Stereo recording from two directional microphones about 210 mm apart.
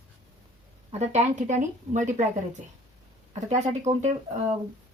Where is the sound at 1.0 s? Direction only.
35° right (ahead or behind).